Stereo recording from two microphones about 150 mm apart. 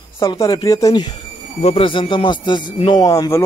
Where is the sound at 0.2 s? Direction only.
25° left (ahead or behind).